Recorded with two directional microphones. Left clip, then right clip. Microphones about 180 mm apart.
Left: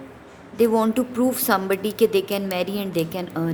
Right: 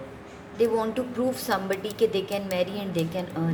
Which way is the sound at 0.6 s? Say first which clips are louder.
Left 5 dB; 45° left (ahead or behind).